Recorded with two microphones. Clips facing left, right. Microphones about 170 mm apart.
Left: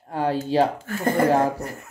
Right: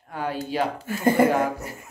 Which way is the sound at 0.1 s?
35° left (ahead or behind).